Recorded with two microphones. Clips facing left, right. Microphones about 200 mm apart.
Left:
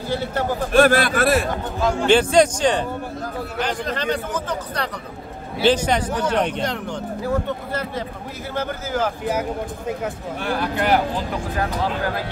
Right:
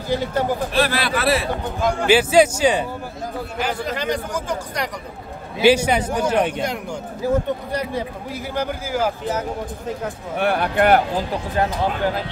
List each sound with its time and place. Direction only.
0.1 s a man's voice: 15° right (ahead or behind)
0.7 s a man's voice: 50° left (ahead or behind)
1.8 s a man's voice: 10° right (ahead or behind)
9.3 s speech: 10° left (ahead or behind)
10.3 s speech: 65° right (ahead or behind)
11.5 s speech: 25° right (ahead or behind)